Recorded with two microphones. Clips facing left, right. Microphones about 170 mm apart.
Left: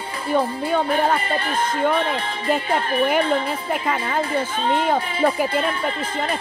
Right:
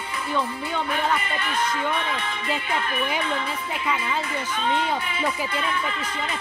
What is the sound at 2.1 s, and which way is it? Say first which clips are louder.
Speech: left 6 dB; 50° left (ahead or behind).